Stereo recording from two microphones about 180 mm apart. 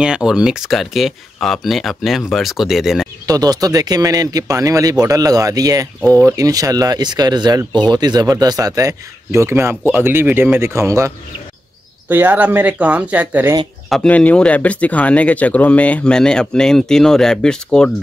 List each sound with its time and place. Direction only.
0.0 s speech: 5° right (ahead or behind)
3.3 s speech: 20° right (ahead or behind)
13.8 s speech: 5° left (ahead or behind)